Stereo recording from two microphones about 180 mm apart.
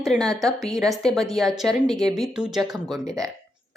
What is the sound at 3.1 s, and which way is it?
Speech, 20° right (ahead or behind).